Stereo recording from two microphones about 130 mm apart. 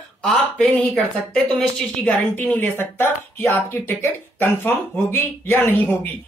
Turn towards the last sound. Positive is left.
turn(degrees=20)  # may be behind; listen again after turning